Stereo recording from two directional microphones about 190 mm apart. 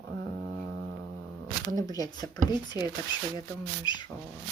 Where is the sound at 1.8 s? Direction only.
20° left (ahead or behind).